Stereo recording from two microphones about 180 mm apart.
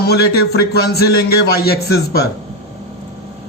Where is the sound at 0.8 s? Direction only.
60° left (ahead or behind).